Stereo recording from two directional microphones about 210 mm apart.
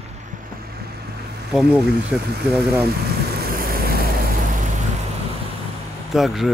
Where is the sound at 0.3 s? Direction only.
40° right (ahead or behind).